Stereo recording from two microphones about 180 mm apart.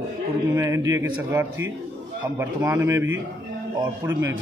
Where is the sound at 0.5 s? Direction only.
15° right (ahead or behind).